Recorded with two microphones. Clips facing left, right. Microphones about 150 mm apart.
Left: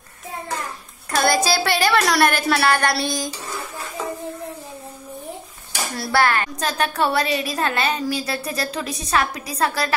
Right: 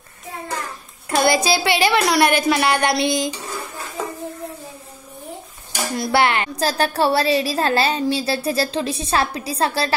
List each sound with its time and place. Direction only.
1.1 s child singing: 20° right (ahead or behind)
1.6 s speech: 20° right (ahead or behind)
2.4 s a sound: 15° right (ahead or behind)
5.9 s speech: 20° right (ahead or behind)
6.6 s a woman's voice: 35° right (ahead or behind)